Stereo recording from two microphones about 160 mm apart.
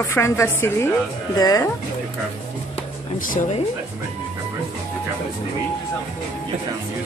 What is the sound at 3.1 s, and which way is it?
Speech, 60° left (ahead or behind).